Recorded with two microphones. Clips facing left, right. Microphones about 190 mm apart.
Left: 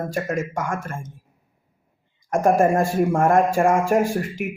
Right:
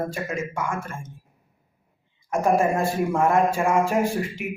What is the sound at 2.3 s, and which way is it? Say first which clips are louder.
Speech: left 3 dB; 50° left (ahead or behind).